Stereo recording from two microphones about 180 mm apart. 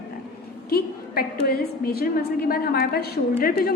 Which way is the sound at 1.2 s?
60° left (ahead or behind).